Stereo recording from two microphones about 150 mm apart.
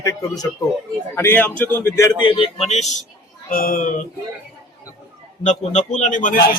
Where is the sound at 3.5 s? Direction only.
70° left (ahead or behind).